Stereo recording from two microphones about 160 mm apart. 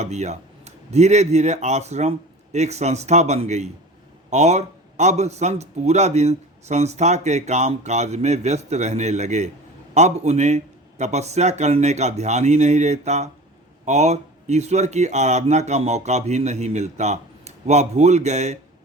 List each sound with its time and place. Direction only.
0.0 s a man's voice: 45° right (ahead or behind)